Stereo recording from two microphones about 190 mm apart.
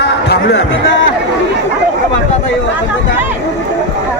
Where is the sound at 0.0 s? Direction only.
65° left (ahead or behind).